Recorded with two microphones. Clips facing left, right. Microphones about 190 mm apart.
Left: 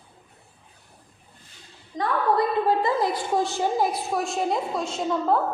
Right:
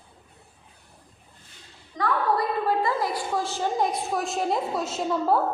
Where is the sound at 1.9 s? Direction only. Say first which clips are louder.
Left 2 dB; 20° left (ahead or behind).